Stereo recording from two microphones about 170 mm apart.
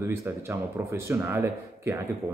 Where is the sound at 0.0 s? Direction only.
15° right (ahead or behind).